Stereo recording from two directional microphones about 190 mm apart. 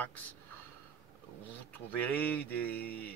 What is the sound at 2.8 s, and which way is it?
Speech, 55° left (ahead or behind).